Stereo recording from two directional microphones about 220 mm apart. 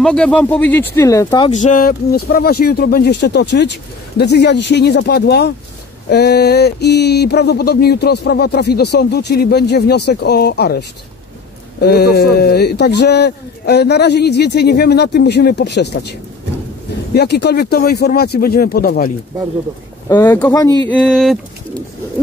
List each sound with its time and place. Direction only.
0.0 s speech: 5° left (ahead or behind)
1.5 s a sound: 35° left (ahead or behind)
20.1 s speech: 10° left (ahead or behind)
20.9 s speech: 5° left (ahead or behind)